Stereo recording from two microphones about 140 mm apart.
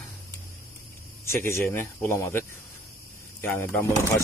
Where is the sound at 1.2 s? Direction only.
20° left (ahead or behind).